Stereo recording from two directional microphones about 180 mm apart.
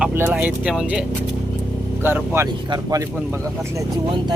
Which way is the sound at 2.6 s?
25° right (ahead or behind).